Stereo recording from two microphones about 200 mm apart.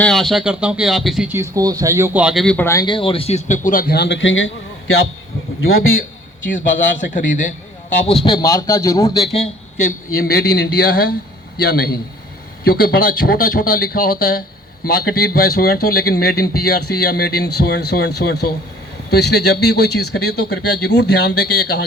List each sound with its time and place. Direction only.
0.0 s a man's voice: centre (ahead or behind); by 5.9 s 90° left
6.4 s a man's voice: 40° left (ahead or behind)
8.0 s a man's voice: 25° left (ahead or behind)
10.2 s speech: 50° left (ahead or behind)